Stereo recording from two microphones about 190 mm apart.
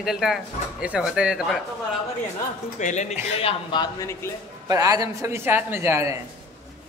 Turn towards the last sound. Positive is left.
turn(degrees=-15)  # may be behind; listen again after turning